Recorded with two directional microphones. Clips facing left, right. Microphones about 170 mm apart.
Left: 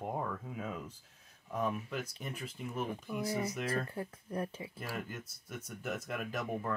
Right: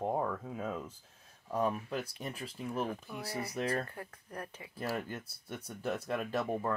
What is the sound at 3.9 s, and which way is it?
Speech, 25° left (ahead or behind).